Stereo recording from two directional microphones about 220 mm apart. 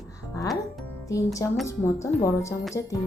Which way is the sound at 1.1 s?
15° left (ahead or behind).